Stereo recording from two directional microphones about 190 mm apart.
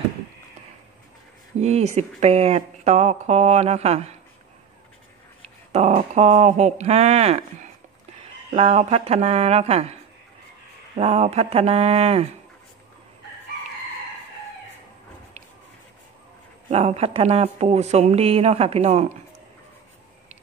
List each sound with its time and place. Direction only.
1.6 s speech: 35° right (ahead or behind)
5.7 s speech: 35° right (ahead or behind)
11.0 s speech: 35° right (ahead or behind)
16.7 s speech: 35° right (ahead or behind)